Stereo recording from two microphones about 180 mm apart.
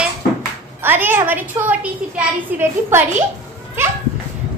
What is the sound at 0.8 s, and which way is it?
A woman's voice, 10° right (ahead or behind).